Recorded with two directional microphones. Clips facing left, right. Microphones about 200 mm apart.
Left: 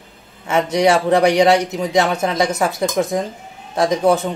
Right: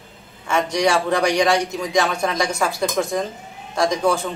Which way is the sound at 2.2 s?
20° left (ahead or behind).